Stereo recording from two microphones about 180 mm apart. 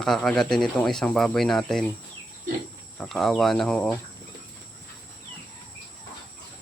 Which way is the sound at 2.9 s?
Centre (ahead or behind).